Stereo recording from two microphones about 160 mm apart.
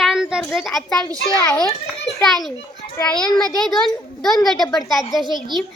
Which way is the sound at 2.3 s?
Centre (ahead or behind).